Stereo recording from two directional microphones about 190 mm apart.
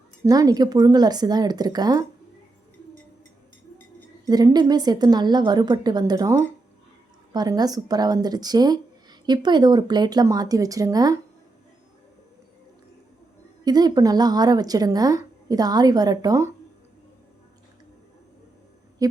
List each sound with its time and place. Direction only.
0.3 s speech: 20° right (ahead or behind)
4.3 s speech: 20° right (ahead or behind)
13.7 s speech: 20° right (ahead or behind)
19.0 s a sound: 20° right (ahead or behind)